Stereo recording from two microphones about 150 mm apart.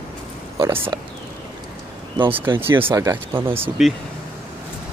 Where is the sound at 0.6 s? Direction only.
20° right (ahead or behind).